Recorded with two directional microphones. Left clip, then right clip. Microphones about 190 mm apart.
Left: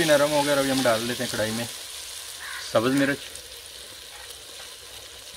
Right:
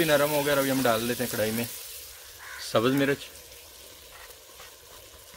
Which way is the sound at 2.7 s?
55° right (ahead or behind).